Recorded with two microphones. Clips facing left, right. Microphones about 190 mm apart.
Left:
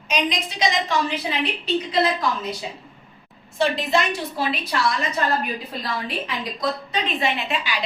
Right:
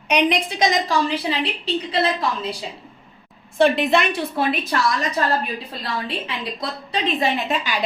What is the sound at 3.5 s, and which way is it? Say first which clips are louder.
A woman's voice: right 4 dB; 60° right (ahead or behind).